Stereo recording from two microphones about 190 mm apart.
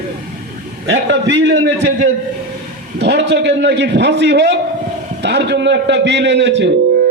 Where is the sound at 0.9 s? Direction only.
70° right (ahead or behind).